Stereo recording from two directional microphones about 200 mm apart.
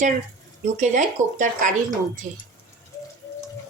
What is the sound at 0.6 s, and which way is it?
A woman's voice, 35° right (ahead or behind).